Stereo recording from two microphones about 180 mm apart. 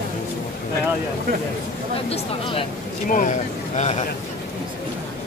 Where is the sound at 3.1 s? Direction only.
45° left (ahead or behind).